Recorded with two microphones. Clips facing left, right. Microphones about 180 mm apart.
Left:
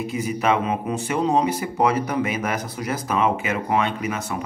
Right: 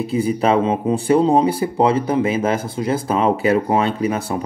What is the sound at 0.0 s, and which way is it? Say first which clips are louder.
Speech: right 5 dB; 30° right (ahead or behind).